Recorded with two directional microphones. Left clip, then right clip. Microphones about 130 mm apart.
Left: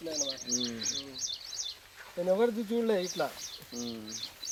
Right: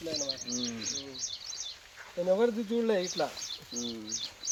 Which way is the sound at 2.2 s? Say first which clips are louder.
Right 1 dB; centre (ahead or behind).